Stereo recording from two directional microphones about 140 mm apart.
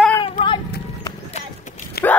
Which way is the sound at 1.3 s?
60° left (ahead or behind).